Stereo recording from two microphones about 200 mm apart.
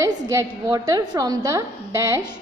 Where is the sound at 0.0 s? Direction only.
15° right (ahead or behind).